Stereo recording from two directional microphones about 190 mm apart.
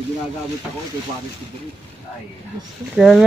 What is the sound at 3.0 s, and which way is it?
Speech, centre (ahead or behind).